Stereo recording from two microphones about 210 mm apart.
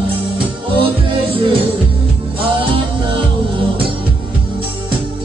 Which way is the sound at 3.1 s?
25° right (ahead or behind).